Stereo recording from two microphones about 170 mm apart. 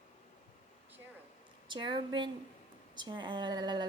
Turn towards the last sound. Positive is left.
turn(degrees=-25)  # may be behind; listen again after turning